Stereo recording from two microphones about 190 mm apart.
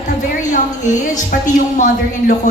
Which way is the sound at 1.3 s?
45° left (ahead or behind).